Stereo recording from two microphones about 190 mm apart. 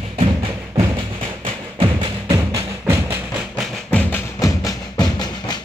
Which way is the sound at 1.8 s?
25° right (ahead or behind).